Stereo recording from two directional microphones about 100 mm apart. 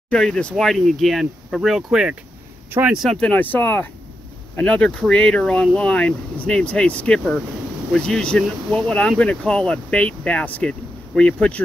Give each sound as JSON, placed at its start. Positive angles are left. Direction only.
{"t": 0.1, "sound": "speech", "side_deg": 10}
{"t": 3.2, "sound": "speech", "side_deg": 15}